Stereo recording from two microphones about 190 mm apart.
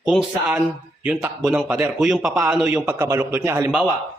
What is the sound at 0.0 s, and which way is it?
A man's voice, centre (ahead or behind).